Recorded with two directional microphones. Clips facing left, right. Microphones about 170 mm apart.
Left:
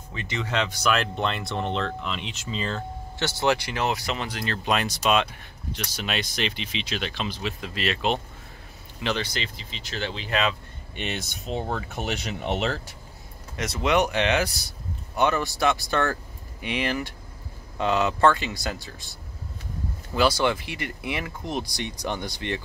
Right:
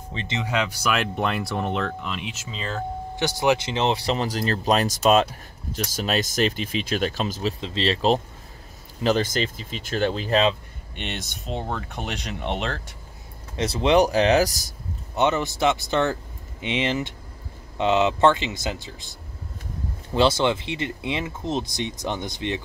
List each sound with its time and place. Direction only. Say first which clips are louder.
0.1 s speech: right 3 dB; 30° right (ahead or behind)
0.4 s speech: right 1 dB; 10° right (ahead or behind)
3.2 s speech: right 2 dB; 15° right (ahead or behind); by 7.5 s 45° right (ahead or behind)
7.6 s speech: right 4 dB; 30° right (ahead or behind)
9.0 s speech: right 7 dB; 45° right (ahead or behind)
11.0 s speech: left 1 dB; centre (ahead or behind)
13.6 s speech: right 4 dB; 30° right (ahead or behind)
15.1 s speech: right 2 dB; 20° right (ahead or behind)
20.2 s speech: right 2 dB; 25° right (ahead or behind)